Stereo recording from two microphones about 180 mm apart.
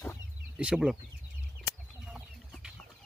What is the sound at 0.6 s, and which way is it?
Speech, 5° right (ahead or behind).